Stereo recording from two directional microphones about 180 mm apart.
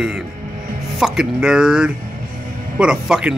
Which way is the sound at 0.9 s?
5° right (ahead or behind).